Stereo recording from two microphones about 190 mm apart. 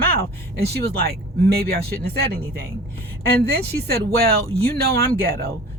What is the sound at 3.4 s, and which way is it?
Speech, 55° right (ahead or behind).